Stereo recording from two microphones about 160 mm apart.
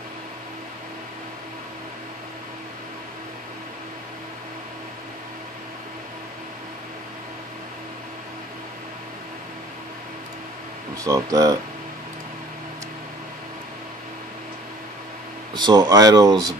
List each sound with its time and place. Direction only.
11.0 s speech: 20° right (ahead or behind)
15.5 s speech: 25° right (ahead or behind)